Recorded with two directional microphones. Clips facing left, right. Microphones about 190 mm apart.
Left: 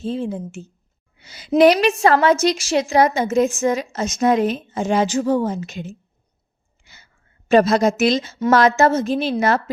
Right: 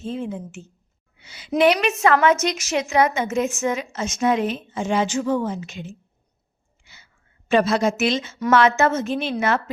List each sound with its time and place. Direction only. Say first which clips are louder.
0.0 s a woman's voice: left 4 dB; 35° left (ahead or behind)
6.8 s a sound: left 2 dB; 45° left (ahead or behind)
8.4 s a woman's voice: left 3 dB; 40° left (ahead or behind)